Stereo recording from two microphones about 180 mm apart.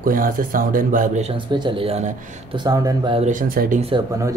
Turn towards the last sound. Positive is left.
turn(degrees=-35)  # may be behind; listen again after turning